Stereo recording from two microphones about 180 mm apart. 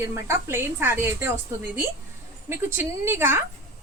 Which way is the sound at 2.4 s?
10° right (ahead or behind).